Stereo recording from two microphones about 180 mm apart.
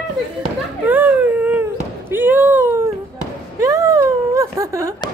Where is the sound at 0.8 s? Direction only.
10° right (ahead or behind).